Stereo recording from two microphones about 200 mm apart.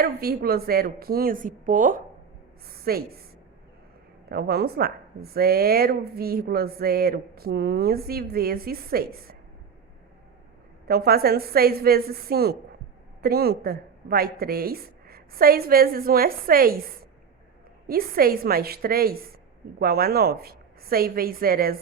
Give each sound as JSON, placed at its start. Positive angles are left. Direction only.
{"t": 0.0, "sound": "speech", "side_deg": -50}
{"t": 4.3, "sound": "speech", "side_deg": -50}
{"t": 10.8, "sound": "speech", "side_deg": -50}
{"t": 17.8, "sound": "speech", "side_deg": -50}